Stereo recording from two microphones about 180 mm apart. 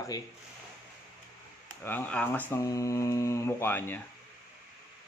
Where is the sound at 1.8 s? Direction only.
10° left (ahead or behind).